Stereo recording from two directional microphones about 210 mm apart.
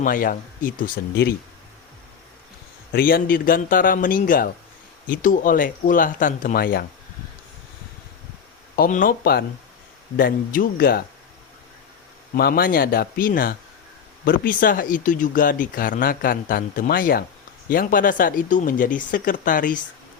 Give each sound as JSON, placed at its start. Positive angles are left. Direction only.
{"t": 0.0, "sound": "speech", "side_deg": 40}
{"t": 2.9, "sound": "a man's voice", "side_deg": 45}
{"t": 8.7, "sound": "a man's voice", "side_deg": 40}
{"t": 12.3, "sound": "a man's voice", "side_deg": 45}